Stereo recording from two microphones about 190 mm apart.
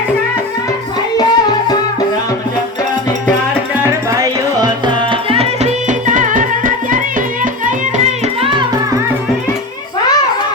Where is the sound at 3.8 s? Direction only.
15° right (ahead or behind); by 7.5 s 45° right (ahead or behind).